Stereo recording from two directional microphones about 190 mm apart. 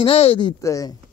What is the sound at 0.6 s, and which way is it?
Speech, 15° left (ahead or behind).